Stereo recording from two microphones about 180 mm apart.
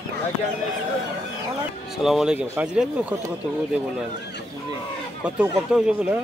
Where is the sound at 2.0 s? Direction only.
5° right (ahead or behind).